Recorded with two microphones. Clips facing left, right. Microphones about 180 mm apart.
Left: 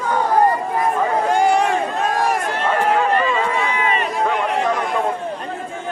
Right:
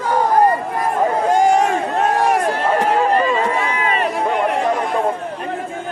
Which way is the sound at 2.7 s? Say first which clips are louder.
Even; 35° right (ahead or behind).